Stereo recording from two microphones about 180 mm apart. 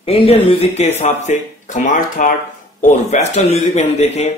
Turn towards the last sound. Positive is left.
turn(degrees=35)  # may be behind; listen again after turning